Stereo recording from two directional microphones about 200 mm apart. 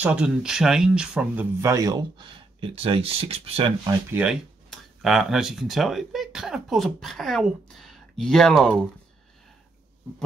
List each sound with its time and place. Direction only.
0.0 s speech: 5° right (ahead or behind); by 3.9 s 25° right (ahead or behind)
4.1 s speech: 5° right (ahead or behind)